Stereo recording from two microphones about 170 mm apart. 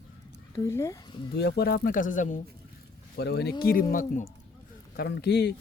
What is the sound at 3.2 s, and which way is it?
Speech, 75° left (ahead or behind).